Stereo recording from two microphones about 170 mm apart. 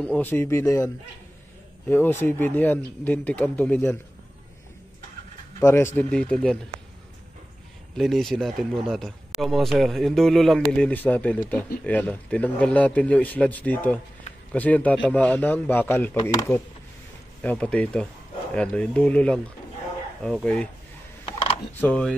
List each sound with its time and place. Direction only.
0.0 s a man's voice: 10° left (ahead or behind)
5.6 s a man's voice: 15° left (ahead or behind)
8.0 s a man's voice: centre (ahead or behind); by 16.5 s 20° left (ahead or behind)
17.4 s a man's voice: 5° left (ahead or behind)
21.8 s a man's voice: 5° left (ahead or behind)